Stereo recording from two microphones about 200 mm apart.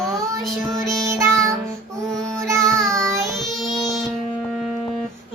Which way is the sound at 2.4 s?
15° right (ahead or behind).